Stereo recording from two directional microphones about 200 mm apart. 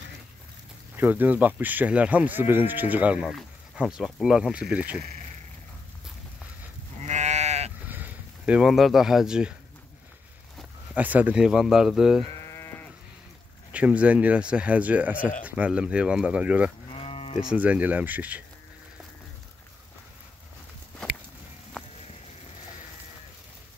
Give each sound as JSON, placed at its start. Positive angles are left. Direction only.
{"t": 0.9, "sound": "speech", "side_deg": -10}
{"t": 7.0, "sound": "sheep", "side_deg": -35}
{"t": 7.8, "sound": "speech", "side_deg": -10}
{"t": 10.6, "sound": "speech", "side_deg": -10}
{"t": 12.4, "sound": "sheep", "side_deg": 15}
{"t": 13.7, "sound": "speech", "side_deg": -5}
{"t": 16.9, "sound": "sheep", "side_deg": 30}
{"t": 17.4, "sound": "speech", "side_deg": -5}